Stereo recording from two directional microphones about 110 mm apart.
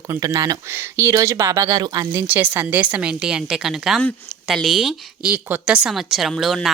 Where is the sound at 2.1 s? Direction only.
20° right (ahead or behind); by 5.3 s centre (ahead or behind).